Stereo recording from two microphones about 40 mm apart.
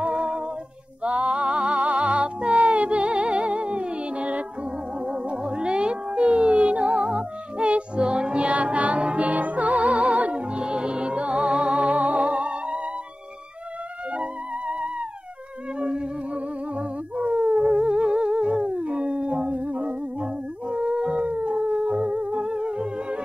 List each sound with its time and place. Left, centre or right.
0.0 s humming: right
1.0 s music: right
14.1 s music: right
15.8 s music: right
20.2 s howl: right